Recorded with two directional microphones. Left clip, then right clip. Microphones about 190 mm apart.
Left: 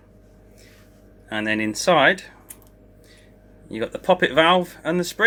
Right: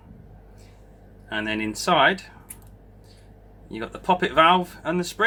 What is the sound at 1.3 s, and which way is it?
Speech, 15° left (ahead or behind).